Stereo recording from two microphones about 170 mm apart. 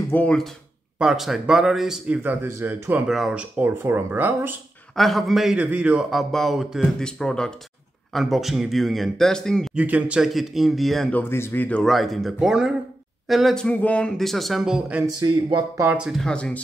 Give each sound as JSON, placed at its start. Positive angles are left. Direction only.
{"t": 0.1, "sound": "speech", "side_deg": 5}
{"t": 4.9, "sound": "speech", "side_deg": 0}
{"t": 9.8, "sound": "speech", "side_deg": -10}
{"t": 15.1, "sound": "speech", "side_deg": -25}
{"t": 15.8, "sound": "speech", "side_deg": -5}